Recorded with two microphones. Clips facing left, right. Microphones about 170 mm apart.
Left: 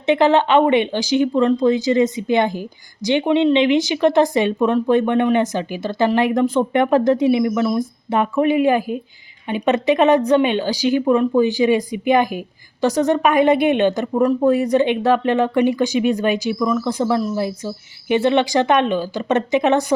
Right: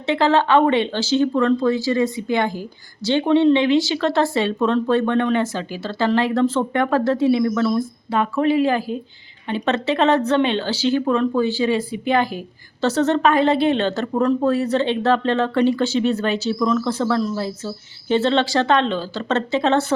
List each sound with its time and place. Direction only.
0.0 s speech: 20° left (ahead or behind)